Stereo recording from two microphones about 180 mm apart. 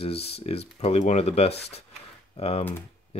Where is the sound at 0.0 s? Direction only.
35° left (ahead or behind).